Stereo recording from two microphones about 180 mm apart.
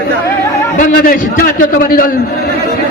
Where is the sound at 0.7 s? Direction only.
50° left (ahead or behind).